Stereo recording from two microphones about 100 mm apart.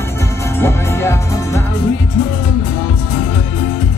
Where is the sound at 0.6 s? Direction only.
25° left (ahead or behind).